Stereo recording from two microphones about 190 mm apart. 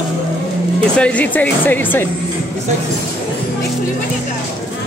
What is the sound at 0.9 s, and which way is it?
Speech, 5° left (ahead or behind).